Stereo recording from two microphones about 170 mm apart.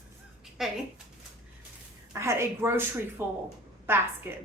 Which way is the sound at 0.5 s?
Centre (ahead or behind).